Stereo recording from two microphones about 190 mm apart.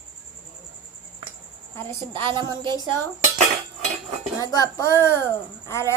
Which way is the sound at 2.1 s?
25° right (ahead or behind).